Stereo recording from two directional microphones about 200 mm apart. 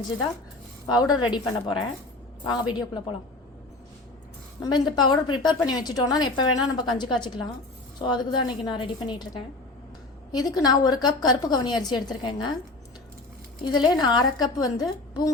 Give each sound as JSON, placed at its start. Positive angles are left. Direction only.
{"t": 0.9, "sound": "a woman's voice", "side_deg": 20}
{"t": 4.6, "sound": "a woman's voice", "side_deg": 20}
{"t": 13.7, "sound": "a woman's voice", "side_deg": 20}